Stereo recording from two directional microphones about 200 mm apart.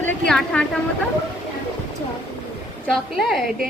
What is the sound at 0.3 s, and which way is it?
Speech, 5° left (ahead or behind).